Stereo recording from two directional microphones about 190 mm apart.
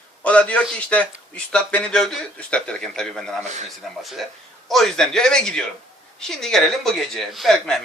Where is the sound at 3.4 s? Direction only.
35° right (ahead or behind).